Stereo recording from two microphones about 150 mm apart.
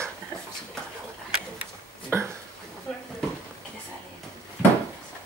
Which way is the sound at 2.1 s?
15° right (ahead or behind).